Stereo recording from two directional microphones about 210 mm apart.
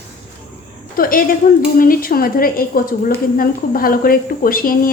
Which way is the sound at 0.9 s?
40° left (ahead or behind).